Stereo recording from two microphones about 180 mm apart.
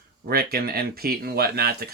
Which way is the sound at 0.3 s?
60° right (ahead or behind).